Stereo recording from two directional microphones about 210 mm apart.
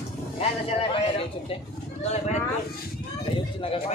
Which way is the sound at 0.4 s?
30° left (ahead or behind).